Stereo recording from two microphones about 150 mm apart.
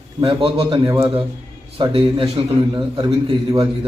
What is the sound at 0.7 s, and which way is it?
A man's voice, 25° right (ahead or behind).